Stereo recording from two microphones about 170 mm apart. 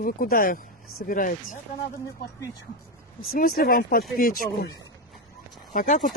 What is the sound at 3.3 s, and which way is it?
Speech, 60° left (ahead or behind).